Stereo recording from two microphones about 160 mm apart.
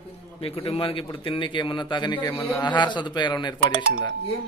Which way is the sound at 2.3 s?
15° left (ahead or behind).